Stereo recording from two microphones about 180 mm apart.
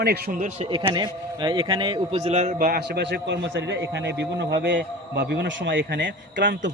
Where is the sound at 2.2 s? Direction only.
40° right (ahead or behind).